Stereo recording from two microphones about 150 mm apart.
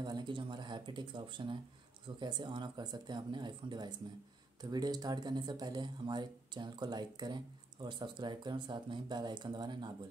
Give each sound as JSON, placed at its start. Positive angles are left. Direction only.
{"t": 0.0, "sound": "speech", "side_deg": -30}